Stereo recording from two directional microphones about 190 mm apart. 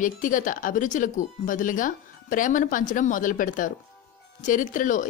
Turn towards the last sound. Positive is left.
turn(degrees=45)  # may be behind; listen again after turning